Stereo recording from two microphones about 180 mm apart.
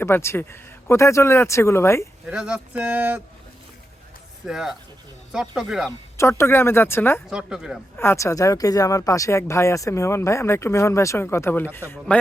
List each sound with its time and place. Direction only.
0.0 s speech: 15° left (ahead or behind)
2.2 s speech: 5° right (ahead or behind)
4.4 s speech: centre (ahead or behind)
6.1 s speech: 15° left (ahead or behind)
7.3 s speech: 5° right (ahead or behind)
7.9 s speech: 15° left (ahead or behind)